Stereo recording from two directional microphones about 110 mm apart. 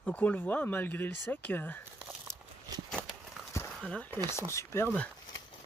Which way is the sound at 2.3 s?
35° right (ahead or behind).